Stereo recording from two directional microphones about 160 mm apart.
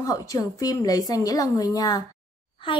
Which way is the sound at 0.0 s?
20° left (ahead or behind).